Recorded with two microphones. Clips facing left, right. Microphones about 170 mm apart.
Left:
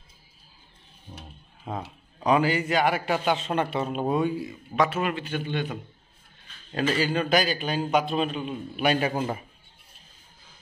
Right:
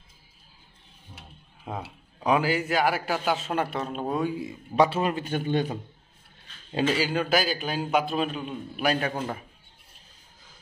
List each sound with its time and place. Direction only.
1.6 s a man's voice: 5° right (ahead or behind)
3.8 s speech: 15° left (ahead or behind)
4.4 s a man's voice: 25° right (ahead or behind)
6.7 s a man's voice: 20° right (ahead or behind)
7.0 s a man's voice: 5° right (ahead or behind)